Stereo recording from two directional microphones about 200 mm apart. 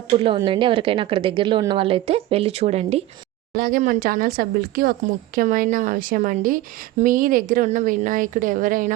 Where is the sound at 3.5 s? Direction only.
45° right (ahead or behind).